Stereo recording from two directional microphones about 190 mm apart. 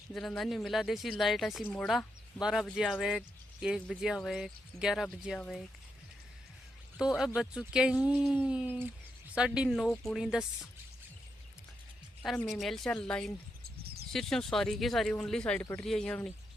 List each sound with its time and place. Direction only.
0.1 s speech: centre (ahead or behind)
6.9 s speech: centre (ahead or behind)
12.5 s speech: centre (ahead or behind)
13.8 s a sound: 55° right (ahead or behind)
14.1 s speech: 5° left (ahead or behind)